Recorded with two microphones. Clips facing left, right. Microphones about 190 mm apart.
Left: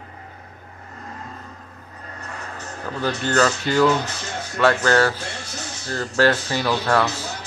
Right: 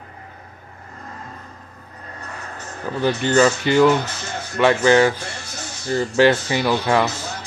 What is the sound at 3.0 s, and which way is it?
Speech, 15° right (ahead or behind).